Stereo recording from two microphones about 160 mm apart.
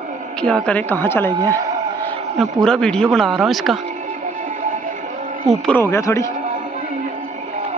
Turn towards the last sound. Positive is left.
turn(degrees=20)  # may be behind; listen again after turning